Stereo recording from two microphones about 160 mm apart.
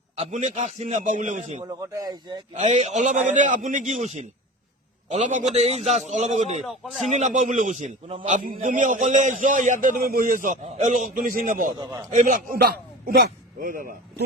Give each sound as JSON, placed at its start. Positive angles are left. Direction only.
{"t": 0.2, "sound": "a man's voice", "side_deg": -45}
{"t": 1.8, "sound": "a man's voice", "side_deg": -20}
{"t": 2.6, "sound": "a man's voice", "side_deg": -45}
{"t": 6.6, "sound": "speech", "side_deg": 0}
{"t": 7.1, "sound": "a man's voice", "side_deg": -50}
{"t": 11.9, "sound": "a man's voice", "side_deg": -20}
{"t": 12.1, "sound": "a man's voice", "side_deg": -60}